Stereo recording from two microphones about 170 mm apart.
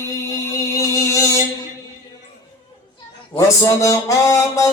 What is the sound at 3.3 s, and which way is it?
Music, 20° left (ahead or behind).